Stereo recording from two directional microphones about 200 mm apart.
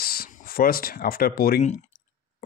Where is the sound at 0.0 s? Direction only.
50° left (ahead or behind).